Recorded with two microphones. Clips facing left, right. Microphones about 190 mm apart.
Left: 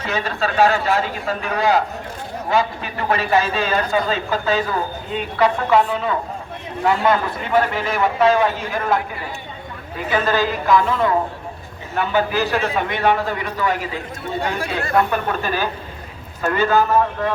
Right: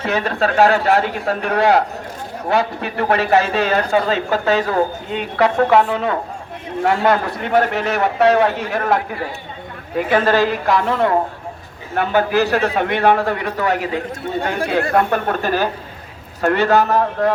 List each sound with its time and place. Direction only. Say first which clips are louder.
0.0 s a man's voice: right 4 dB; 60° right (ahead or behind)
10.1 s a man's voice: right 3 dB; 65° right (ahead or behind)